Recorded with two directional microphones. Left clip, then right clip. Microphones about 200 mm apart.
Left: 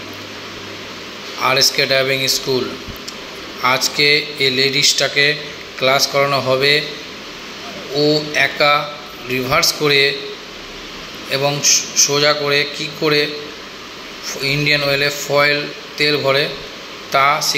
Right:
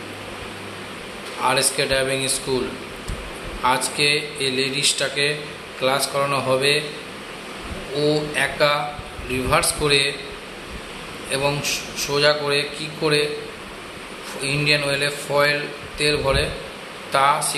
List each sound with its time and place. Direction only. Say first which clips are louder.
1.4 s a man's voice: left 6 dB; 15° left (ahead or behind)
3.6 s a man's voice: left 5 dB; 15° left (ahead or behind)
7.9 s a man's voice: left 5 dB; 15° left (ahead or behind)
11.2 s a man's voice: left 6 dB; 10° left (ahead or behind)
14.4 s a man's voice: left 4 dB; 15° left (ahead or behind)